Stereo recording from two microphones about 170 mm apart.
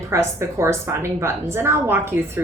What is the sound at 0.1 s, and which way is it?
A woman's voice, 15° right (ahead or behind).